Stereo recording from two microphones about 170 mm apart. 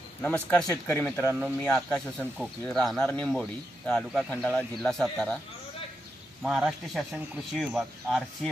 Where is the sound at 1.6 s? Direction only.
5° left (ahead or behind).